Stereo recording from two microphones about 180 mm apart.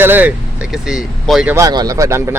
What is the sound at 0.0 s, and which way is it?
A man's voice, 10° right (ahead or behind).